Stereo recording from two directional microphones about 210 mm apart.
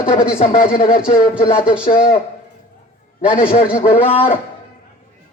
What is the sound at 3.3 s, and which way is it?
A man's voice, 30° left (ahead or behind).